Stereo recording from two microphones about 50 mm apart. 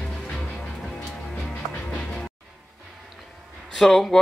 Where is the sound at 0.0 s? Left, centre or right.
Centre.